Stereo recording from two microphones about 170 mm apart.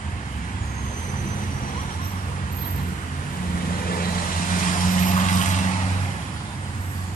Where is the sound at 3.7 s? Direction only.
60° left (ahead or behind).